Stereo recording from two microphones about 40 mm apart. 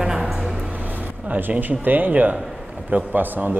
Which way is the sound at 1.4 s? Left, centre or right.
Right.